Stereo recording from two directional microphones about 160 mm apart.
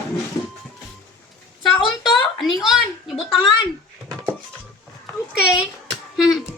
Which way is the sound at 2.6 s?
Centre (ahead or behind).